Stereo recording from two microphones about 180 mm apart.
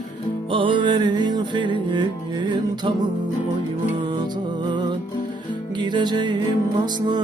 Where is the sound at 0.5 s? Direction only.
30° right (ahead or behind).